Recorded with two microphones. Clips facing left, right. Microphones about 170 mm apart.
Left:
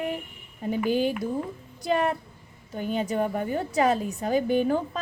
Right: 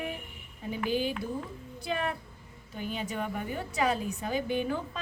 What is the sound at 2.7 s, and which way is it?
A woman's voice, 40° left (ahead or behind).